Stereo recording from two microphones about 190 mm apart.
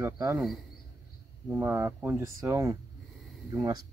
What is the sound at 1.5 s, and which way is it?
Speech, 10° right (ahead or behind).